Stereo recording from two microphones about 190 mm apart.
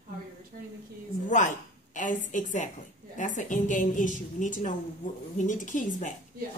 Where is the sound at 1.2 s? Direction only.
40° left (ahead or behind).